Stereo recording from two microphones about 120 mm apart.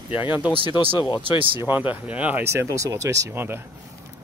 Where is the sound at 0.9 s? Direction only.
35° left (ahead or behind).